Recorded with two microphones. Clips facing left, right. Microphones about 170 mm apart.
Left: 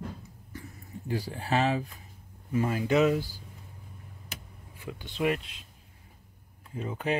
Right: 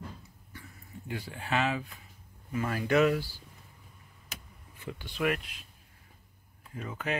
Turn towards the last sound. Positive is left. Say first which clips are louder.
# left 4 dB
turn(degrees=30)  # may be behind; listen again after turning